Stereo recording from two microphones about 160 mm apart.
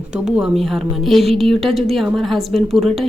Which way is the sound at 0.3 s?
5° right (ahead or behind).